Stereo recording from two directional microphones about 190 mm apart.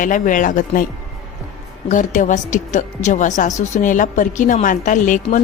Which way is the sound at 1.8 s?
40° left (ahead or behind).